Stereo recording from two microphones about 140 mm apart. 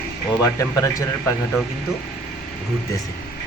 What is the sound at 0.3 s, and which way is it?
A man's voice, 20° left (ahead or behind).